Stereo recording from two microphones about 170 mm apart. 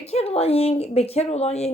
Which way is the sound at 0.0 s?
35° left (ahead or behind).